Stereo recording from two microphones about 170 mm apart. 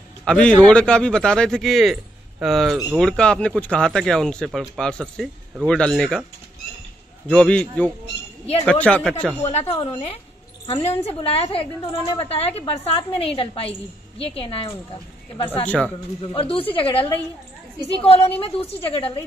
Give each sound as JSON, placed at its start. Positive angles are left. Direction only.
{"t": 0.2, "sound": "speech", "side_deg": 5}
{"t": 7.2, "sound": "speech", "side_deg": 5}
{"t": 9.4, "sound": "a woman's voice", "side_deg": 40}
{"t": 15.6, "sound": "speech", "side_deg": 5}
{"t": 16.3, "sound": "a woman's voice", "side_deg": 30}